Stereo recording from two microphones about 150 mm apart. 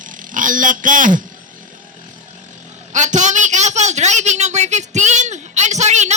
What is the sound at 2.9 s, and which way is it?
Speech, 55° right (ahead or behind).